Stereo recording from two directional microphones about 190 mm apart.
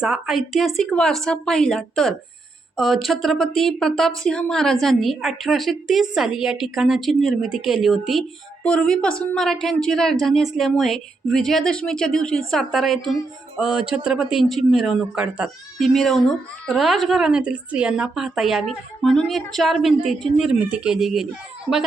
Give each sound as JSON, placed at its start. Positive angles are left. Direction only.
{"t": 0.0, "sound": "speech", "side_deg": -5}